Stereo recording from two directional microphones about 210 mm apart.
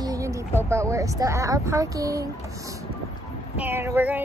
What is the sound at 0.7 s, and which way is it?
Speech, 15° right (ahead or behind).